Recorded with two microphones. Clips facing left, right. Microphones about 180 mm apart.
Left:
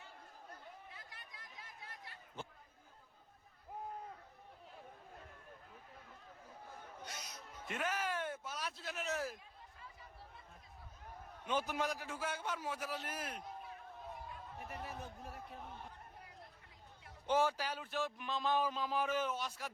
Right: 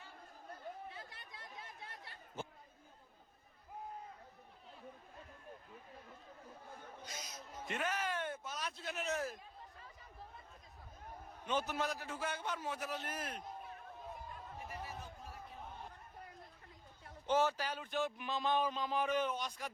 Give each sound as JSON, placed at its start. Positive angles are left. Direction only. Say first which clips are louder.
{"t": 0.9, "sound": "chatter", "louder": "right 5 dB", "side_deg": -30}
{"t": 7.0, "sound": "a sound", "louder": "even", "side_deg": 65}
{"t": 7.7, "sound": "a sound", "louder": "even", "side_deg": 5}
{"t": 11.4, "sound": "a man's voice", "louder": "even", "side_deg": 10}
{"t": 14.7, "sound": "chatter", "louder": "left 3 dB", "side_deg": 60}
{"t": 17.2, "sound": "speech", "louder": "even", "side_deg": 10}